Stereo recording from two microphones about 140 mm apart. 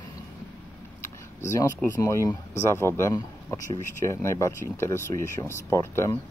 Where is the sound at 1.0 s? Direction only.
20° left (ahead or behind).